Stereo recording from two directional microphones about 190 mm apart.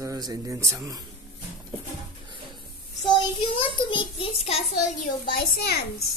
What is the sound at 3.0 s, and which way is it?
A child's voice, 30° left (ahead or behind).